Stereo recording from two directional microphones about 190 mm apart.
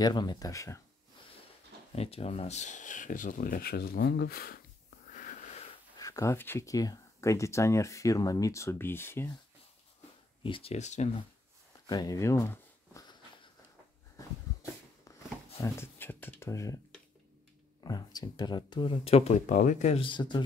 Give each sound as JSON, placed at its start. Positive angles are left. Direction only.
{"t": 0.0, "sound": "speech", "side_deg": 20}
{"t": 2.0, "sound": "speech", "side_deg": 30}
{"t": 5.1, "sound": "wheeze", "side_deg": 40}
{"t": 5.9, "sound": "speech", "side_deg": 15}
{"t": 10.4, "sound": "speech", "side_deg": 30}
{"t": 11.9, "sound": "speech", "side_deg": 20}
{"t": 14.1, "sound": "a sound", "side_deg": 15}
{"t": 15.6, "sound": "speech", "side_deg": 10}